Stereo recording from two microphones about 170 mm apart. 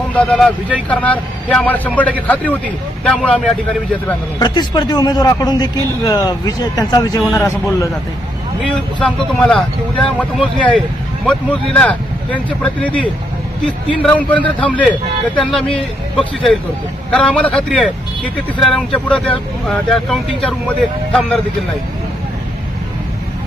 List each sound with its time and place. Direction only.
0.1 s speech: 5° left (ahead or behind)
4.4 s a man's voice: 25° left (ahead or behind)
9.0 s speech: 5° left (ahead or behind)
11.3 s speech: 5° left (ahead or behind)